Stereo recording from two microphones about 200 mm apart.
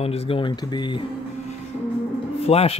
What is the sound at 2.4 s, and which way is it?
Speech, 30° left (ahead or behind).